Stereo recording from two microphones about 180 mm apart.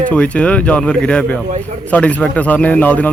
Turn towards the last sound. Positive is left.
turn(degrees=10)  # may be behind; listen again after turning